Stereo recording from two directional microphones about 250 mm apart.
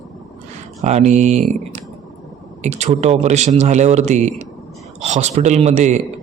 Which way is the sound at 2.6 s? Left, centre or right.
Right.